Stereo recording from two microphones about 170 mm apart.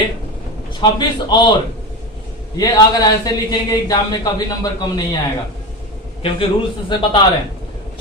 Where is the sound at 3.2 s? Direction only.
20° left (ahead or behind).